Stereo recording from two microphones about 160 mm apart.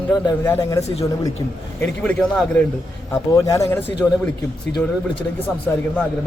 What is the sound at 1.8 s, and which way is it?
Speech, 10° left (ahead or behind).